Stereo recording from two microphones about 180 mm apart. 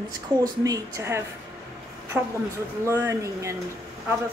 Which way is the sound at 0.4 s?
20° right (ahead or behind).